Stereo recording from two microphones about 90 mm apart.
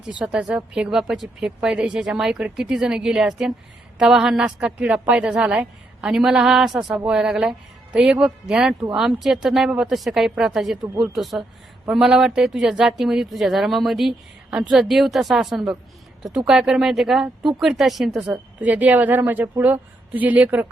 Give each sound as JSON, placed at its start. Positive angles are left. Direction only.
{"t": 0.2, "sound": "a woman's voice", "side_deg": -10}
{"t": 18.6, "sound": "a woman's voice", "side_deg": -20}